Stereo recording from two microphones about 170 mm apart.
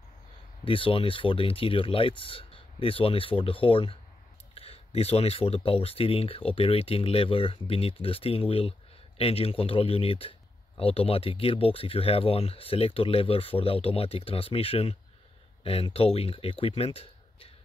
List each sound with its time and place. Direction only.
0.7 s speech: 30° left (ahead or behind)